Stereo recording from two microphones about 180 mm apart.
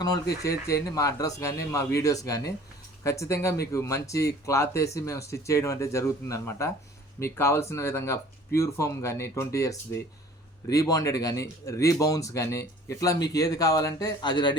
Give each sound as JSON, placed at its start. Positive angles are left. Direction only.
{"t": 0.7, "sound": "speech", "side_deg": 20}